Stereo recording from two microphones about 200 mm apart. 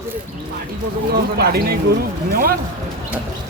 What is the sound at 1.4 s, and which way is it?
Speech, 50° right (ahead or behind).